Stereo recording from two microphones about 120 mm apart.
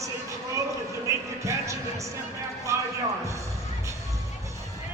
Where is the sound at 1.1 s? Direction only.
25° right (ahead or behind).